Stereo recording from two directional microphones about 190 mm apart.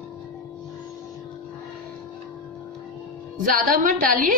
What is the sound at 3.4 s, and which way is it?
Speech, 45° right (ahead or behind).